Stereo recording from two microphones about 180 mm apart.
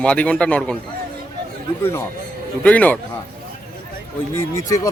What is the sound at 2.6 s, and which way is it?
Speech, 10° left (ahead or behind).